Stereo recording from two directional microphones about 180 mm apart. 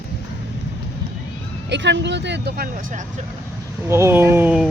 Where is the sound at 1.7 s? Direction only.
75° right (ahead or behind).